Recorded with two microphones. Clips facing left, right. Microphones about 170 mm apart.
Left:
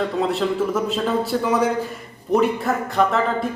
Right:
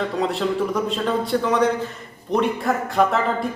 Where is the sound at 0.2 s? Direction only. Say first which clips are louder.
Even; centre (ahead or behind).